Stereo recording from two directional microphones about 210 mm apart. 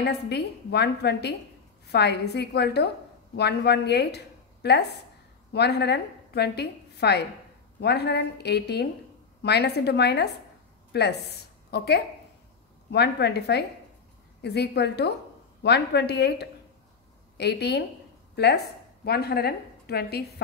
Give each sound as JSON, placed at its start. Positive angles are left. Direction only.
{"t": 0.0, "sound": "a woman's voice", "side_deg": 50}